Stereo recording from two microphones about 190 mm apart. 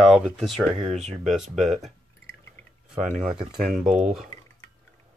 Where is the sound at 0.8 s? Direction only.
35° right (ahead or behind).